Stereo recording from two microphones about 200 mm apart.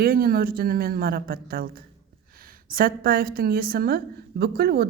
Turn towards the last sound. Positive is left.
turn(degrees=-50)  # may be behind; listen again after turning